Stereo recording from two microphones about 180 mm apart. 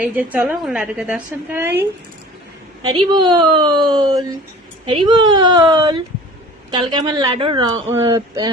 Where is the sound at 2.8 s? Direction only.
25° right (ahead or behind).